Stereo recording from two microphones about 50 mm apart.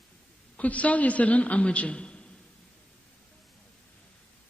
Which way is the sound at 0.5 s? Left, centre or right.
Left.